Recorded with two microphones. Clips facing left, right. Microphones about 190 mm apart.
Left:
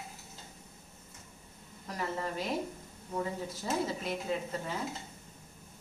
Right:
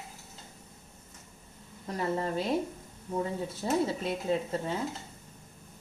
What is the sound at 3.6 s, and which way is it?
Speech, 30° right (ahead or behind).